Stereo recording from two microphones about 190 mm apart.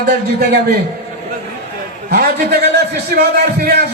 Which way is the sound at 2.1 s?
55° right (ahead or behind).